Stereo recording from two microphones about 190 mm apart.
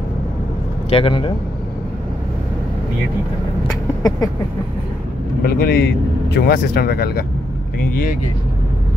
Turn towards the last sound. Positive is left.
turn(degrees=50)  # may be behind; listen again after turning